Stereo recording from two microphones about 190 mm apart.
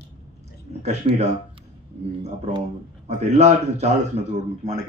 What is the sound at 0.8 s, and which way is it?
A man's voice, 35° right (ahead or behind).